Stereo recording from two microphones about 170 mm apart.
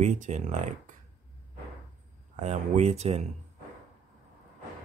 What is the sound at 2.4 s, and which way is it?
Speech, 40° right (ahead or behind).